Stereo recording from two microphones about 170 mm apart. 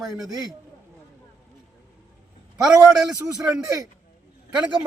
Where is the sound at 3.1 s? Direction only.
20° right (ahead or behind).